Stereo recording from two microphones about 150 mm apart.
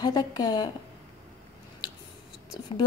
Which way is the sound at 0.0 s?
30° left (ahead or behind).